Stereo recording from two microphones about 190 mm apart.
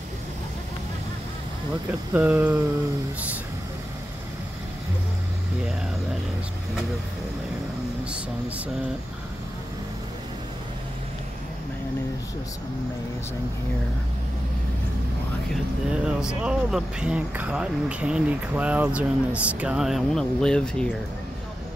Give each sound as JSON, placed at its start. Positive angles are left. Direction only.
{"t": 2.1, "sound": "speech", "side_deg": -10}
{"t": 15.5, "sound": "speech", "side_deg": -5}